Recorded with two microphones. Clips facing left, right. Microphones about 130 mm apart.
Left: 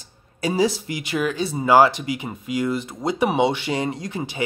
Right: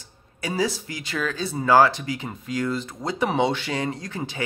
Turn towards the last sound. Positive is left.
turn(degrees=15)  # may be behind; listen again after turning